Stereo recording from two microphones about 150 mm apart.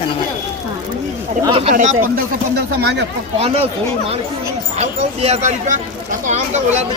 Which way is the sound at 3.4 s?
40° right (ahead or behind).